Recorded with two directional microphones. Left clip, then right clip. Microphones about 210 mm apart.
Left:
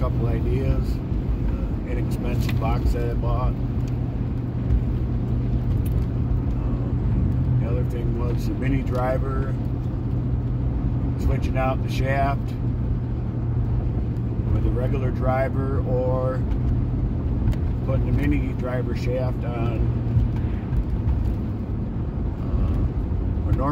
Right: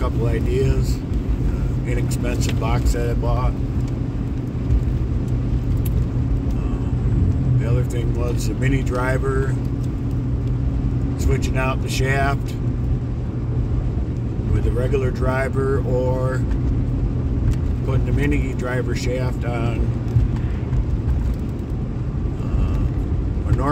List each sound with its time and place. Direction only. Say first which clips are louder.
12.1 s speech: right 2 dB; 25° right (ahead or behind)
14.9 s speech: right 3 dB; 25° right (ahead or behind)